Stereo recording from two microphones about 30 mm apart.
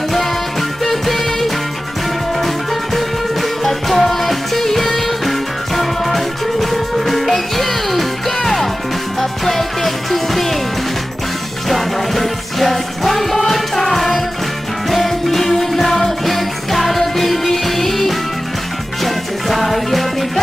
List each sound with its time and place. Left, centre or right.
0.1 s music: centre
3.6 s music: centre
11.7 s music: centre